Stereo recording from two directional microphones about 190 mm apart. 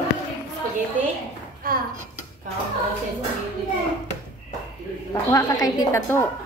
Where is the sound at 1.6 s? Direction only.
50° right (ahead or behind).